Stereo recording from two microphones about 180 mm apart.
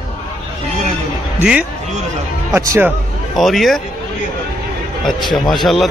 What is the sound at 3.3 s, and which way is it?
Speech, centre (ahead or behind).